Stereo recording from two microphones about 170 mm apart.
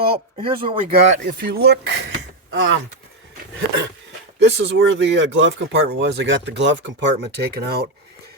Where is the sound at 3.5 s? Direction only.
90° right.